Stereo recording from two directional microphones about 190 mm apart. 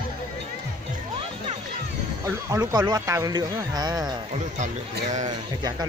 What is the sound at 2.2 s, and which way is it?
Speech, 15° right (ahead or behind).